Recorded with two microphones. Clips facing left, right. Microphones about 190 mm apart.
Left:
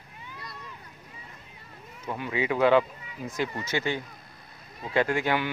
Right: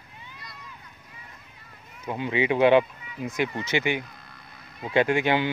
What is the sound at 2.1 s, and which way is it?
Speech, 20° right (ahead or behind).